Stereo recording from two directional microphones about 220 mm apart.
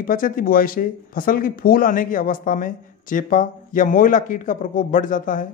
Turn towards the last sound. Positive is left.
turn(degrees=40)  # may be behind; listen again after turning